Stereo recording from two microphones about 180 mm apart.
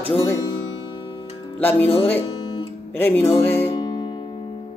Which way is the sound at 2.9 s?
10° left (ahead or behind).